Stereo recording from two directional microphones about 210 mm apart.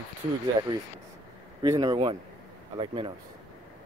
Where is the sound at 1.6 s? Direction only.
20° right (ahead or behind).